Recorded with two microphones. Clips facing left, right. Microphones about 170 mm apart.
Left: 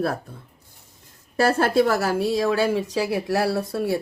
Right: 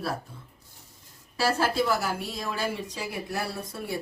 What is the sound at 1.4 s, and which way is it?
A woman's voice, 55° left (ahead or behind).